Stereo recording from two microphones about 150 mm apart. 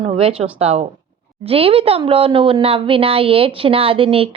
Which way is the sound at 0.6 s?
45° right (ahead or behind).